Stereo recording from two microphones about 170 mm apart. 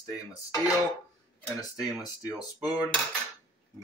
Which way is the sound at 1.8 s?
Centre (ahead or behind).